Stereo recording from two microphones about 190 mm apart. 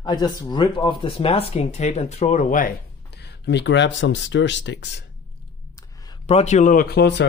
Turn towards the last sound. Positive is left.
turn(degrees=60)  # may be behind; listen again after turning